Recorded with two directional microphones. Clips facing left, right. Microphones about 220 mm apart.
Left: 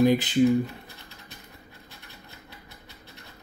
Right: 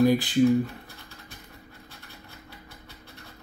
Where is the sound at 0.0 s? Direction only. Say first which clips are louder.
Even; 20° left (ahead or behind).